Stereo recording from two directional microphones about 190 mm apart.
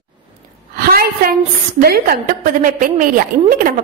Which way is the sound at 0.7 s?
50° right (ahead or behind).